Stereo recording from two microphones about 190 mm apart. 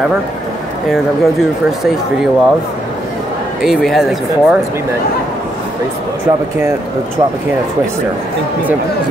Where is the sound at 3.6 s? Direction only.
Centre (ahead or behind).